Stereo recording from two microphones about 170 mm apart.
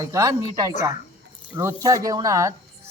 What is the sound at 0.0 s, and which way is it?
Speech, 20° right (ahead or behind).